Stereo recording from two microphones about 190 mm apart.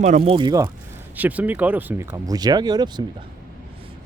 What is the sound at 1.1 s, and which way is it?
Speech, 10° right (ahead or behind).